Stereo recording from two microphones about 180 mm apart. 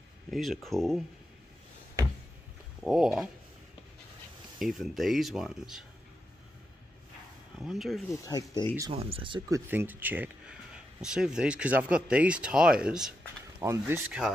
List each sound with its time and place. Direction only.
0.3 s speech: centre (ahead or behind)
2.8 s speech: 5° right (ahead or behind)
4.6 s speech: centre (ahead or behind)
7.5 s speech: centre (ahead or behind)
8.1 s speech: 20° left (ahead or behind)
8.9 s speech: 30° right (ahead or behind)
9.7 s speech: 10° right (ahead or behind)
13.6 s speech: 15° right (ahead or behind)